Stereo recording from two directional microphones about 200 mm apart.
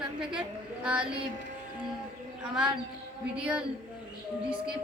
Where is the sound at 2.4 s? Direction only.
5° right (ahead or behind).